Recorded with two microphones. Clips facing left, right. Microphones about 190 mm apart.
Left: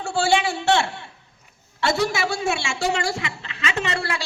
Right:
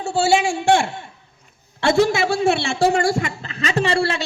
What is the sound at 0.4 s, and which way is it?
Speech, 15° right (ahead or behind).